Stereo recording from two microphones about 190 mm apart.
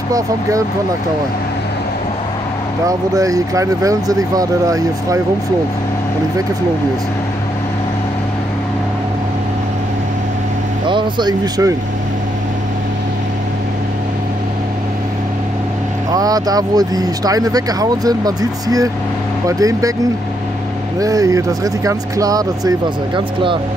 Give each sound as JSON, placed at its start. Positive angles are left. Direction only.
{"t": 0.1, "sound": "speech", "side_deg": -15}
{"t": 2.9, "sound": "speech", "side_deg": -15}
{"t": 10.9, "sound": "speech", "side_deg": -25}
{"t": 16.1, "sound": "speech", "side_deg": -20}
{"t": 21.0, "sound": "speech", "side_deg": -20}